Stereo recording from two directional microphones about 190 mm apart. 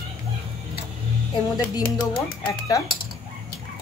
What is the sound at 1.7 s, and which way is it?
Speech, 20° left (ahead or behind).